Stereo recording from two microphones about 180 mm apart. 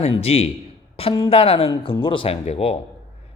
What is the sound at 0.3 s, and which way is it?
A man's voice, 35° left (ahead or behind).